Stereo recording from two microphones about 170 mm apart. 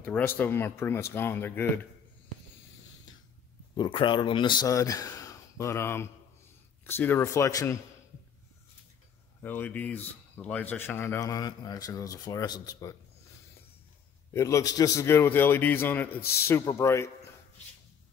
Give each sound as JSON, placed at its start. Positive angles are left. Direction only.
{"t": 0.0, "sound": "speech", "side_deg": 10}
{"t": 3.7, "sound": "speech", "side_deg": 25}
{"t": 9.4, "sound": "speech", "side_deg": 10}
{"t": 14.3, "sound": "speech", "side_deg": 15}
{"t": 16.2, "sound": "a man's voice", "side_deg": 65}
{"t": 16.4, "sound": "speech", "side_deg": 15}